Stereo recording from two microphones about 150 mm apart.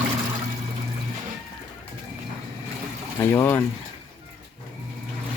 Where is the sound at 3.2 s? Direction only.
15° left (ahead or behind).